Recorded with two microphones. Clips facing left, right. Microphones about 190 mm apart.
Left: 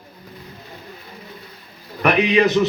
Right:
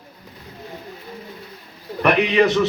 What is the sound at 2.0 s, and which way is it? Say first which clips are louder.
Speech: even; 5° left (ahead or behind).